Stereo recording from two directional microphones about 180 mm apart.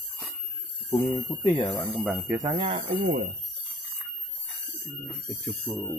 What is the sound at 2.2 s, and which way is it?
Speech, 20° right (ahead or behind).